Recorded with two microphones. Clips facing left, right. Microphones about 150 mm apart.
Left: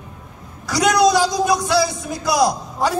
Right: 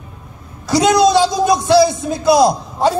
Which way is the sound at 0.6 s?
25° right (ahead or behind).